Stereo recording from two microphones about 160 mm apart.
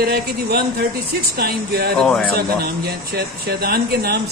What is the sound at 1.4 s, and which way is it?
Speech, 75° right (ahead or behind).